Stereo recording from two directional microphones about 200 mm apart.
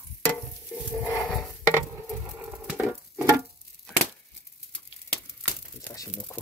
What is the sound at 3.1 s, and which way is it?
Music, 15° right (ahead or behind).